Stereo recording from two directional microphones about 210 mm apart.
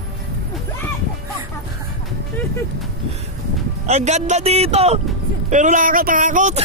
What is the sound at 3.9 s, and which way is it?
Speech, 30° right (ahead or behind).